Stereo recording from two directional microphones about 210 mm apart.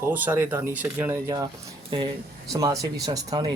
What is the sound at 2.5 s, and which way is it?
Speech, 15° right (ahead or behind).